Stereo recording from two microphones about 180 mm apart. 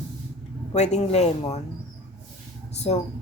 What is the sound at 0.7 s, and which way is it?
Speech, 35° left (ahead or behind).